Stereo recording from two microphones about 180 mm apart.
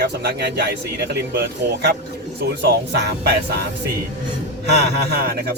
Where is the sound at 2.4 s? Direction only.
70° right (ahead or behind).